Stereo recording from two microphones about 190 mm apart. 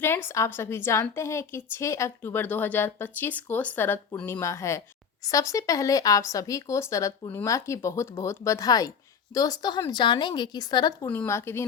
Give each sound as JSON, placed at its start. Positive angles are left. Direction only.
{"t": 0.3, "sound": "a woman's voice", "side_deg": 15}